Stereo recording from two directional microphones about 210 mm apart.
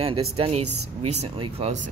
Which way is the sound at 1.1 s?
30° right (ahead or behind).